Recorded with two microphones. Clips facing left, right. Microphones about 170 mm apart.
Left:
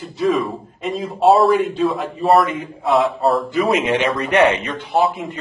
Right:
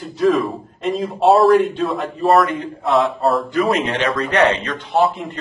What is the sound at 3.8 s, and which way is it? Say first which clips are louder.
Speech: left 2 dB; 15° left (ahead or behind).